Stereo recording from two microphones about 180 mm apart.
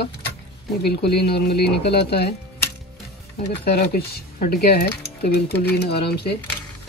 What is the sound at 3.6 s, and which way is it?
Speech, 60° left (ahead or behind).